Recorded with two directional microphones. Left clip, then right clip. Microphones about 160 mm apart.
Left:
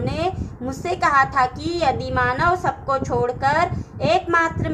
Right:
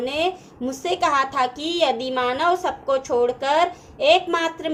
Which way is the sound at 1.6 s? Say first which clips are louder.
Even; 15° right (ahead or behind).